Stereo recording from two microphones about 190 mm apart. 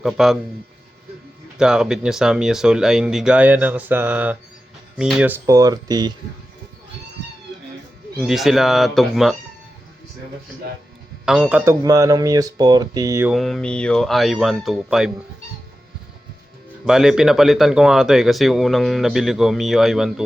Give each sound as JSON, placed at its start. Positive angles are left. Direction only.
{"t": 0.0, "sound": "speech", "side_deg": 0}
{"t": 1.5, "sound": "speech", "side_deg": -5}
{"t": 8.2, "sound": "speech", "side_deg": 0}
{"t": 11.3, "sound": "speech", "side_deg": -5}
{"t": 13.3, "sound": "speech", "side_deg": 0}
{"t": 16.8, "sound": "speech", "side_deg": -5}